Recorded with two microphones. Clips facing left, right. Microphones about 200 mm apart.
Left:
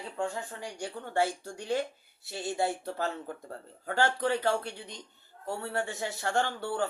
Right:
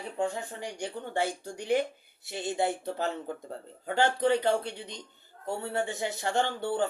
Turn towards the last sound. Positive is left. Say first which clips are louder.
# right 2 dB
turn(degrees=-20)  # may be behind; listen again after turning